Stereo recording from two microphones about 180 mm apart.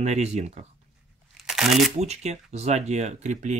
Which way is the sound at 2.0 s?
40° right (ahead or behind).